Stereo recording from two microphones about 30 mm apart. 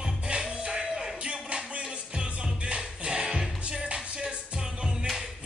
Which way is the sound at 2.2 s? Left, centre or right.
Right.